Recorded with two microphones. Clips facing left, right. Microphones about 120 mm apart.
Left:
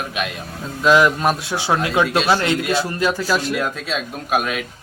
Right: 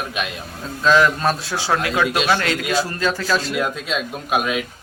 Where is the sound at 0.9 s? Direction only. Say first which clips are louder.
Left 1 dB; 15° left (ahead or behind).